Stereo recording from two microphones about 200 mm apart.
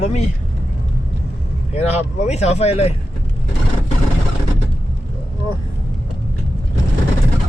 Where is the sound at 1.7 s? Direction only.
30° left (ahead or behind).